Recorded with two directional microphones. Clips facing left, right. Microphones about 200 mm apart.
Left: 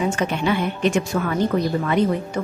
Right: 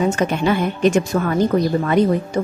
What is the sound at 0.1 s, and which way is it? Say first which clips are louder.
A woman's voice: right 3 dB; 40° right (ahead or behind).